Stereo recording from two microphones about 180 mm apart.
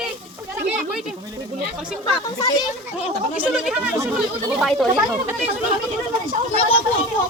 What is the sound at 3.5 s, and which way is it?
Speech, 5° right (ahead or behind).